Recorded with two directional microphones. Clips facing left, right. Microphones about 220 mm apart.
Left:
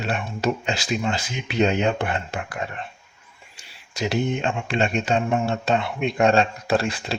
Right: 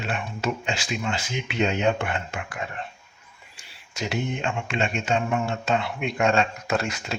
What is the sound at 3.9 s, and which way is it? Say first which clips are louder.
Speech: left 5 dB; 35° left (ahead or behind).